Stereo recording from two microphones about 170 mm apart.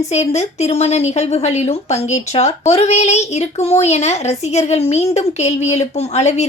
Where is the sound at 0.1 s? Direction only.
40° left (ahead or behind).